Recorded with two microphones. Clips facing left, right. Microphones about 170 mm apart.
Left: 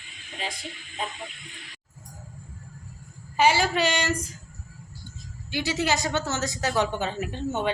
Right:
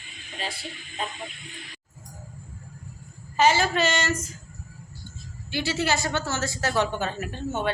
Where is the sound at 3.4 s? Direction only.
10° left (ahead or behind).